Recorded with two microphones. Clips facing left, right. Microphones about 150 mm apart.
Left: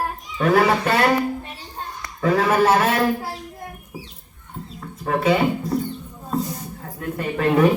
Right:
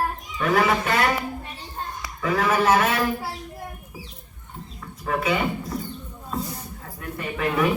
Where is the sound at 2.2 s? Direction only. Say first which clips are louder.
Left 4 dB; 40° left (ahead or behind).